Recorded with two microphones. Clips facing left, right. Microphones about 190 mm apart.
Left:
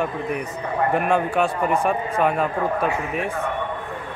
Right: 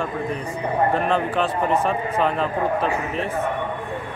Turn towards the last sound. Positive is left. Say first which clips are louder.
# even
turn(degrees=10)  # may be behind; listen again after turning